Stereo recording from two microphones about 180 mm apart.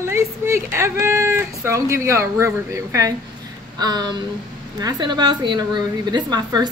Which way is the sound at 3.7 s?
20° right (ahead or behind).